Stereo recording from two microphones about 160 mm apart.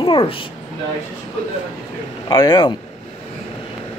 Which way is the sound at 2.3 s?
25° left (ahead or behind).